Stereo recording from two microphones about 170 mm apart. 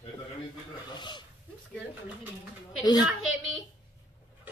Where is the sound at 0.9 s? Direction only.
25° left (ahead or behind).